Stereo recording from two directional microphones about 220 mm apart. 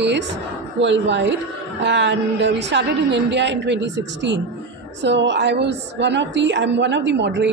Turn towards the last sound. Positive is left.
turn(degrees=-55)  # may be behind; listen again after turning